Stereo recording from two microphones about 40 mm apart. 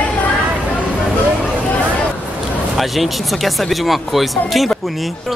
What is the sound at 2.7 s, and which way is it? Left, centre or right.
Speech, centre.